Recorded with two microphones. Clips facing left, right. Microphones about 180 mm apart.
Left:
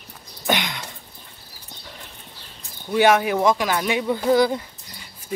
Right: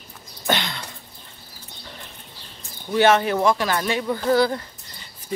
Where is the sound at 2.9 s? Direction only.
10° left (ahead or behind).